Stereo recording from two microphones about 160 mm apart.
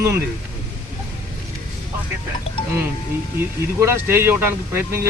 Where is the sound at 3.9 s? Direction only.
15° right (ahead or behind).